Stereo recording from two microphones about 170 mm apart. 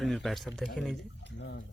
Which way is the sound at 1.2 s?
90° left.